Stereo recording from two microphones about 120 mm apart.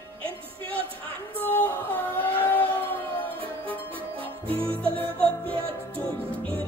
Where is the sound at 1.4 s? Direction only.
15° left (ahead or behind).